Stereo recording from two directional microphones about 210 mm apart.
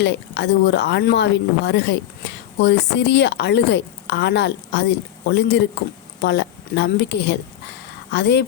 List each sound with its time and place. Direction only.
0.0 s speech: 55° left (ahead or behind)